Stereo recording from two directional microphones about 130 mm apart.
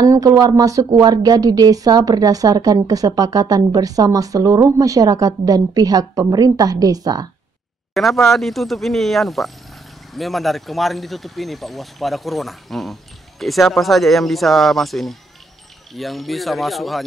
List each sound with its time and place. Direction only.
0.0 s a woman's voice: 25° right (ahead or behind)
7.9 s speech: centre (ahead or behind)